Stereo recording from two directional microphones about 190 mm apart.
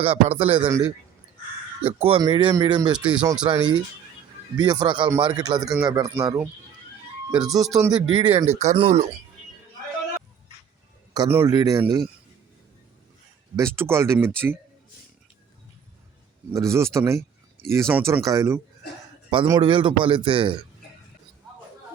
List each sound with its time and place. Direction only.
0.0 s a man's voice: 30° right (ahead or behind)
0.6 s speech: 5° right (ahead or behind)
2.0 s a man's voice: 30° right (ahead or behind)
2.9 s speech: 5° right (ahead or behind)
3.4 s a man's voice: 25° right (ahead or behind)
11.1 s a man's voice: 15° right (ahead or behind)
13.6 s speech: 15° right (ahead or behind)
16.5 s a man's voice: 15° right (ahead or behind)